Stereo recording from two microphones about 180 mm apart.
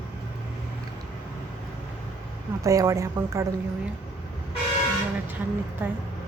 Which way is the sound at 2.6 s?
15° right (ahead or behind).